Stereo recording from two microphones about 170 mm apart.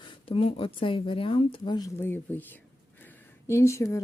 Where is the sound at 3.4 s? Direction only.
15° left (ahead or behind).